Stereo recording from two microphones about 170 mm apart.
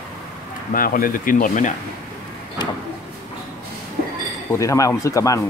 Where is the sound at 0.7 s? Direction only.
55° left (ahead or behind).